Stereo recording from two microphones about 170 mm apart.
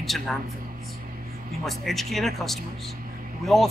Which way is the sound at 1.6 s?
Centre (ahead or behind).